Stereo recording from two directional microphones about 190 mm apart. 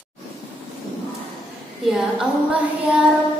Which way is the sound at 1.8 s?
Centre (ahead or behind).